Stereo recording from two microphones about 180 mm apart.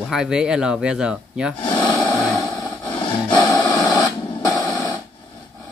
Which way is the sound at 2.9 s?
25° left (ahead or behind).